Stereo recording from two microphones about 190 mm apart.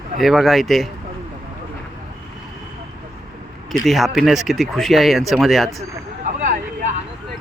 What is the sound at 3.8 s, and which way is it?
Speech, centre (ahead or behind).